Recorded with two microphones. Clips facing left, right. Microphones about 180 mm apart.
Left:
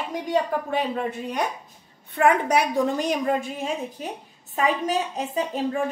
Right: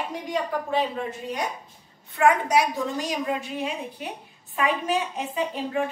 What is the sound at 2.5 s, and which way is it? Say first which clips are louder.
A woman's voice: left 2 dB; 55° left (ahead or behind).